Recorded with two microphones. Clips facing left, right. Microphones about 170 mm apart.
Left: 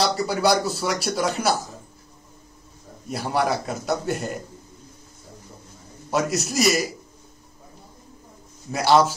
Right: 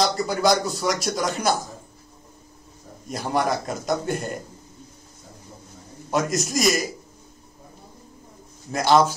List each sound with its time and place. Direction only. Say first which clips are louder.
0.0 s speech: even; 5° left (ahead or behind)
3.1 s speech: even; 5° left (ahead or behind)
6.0 s speech: even; 5° left (ahead or behind)
8.7 s a man's voice: even; 5° left (ahead or behind)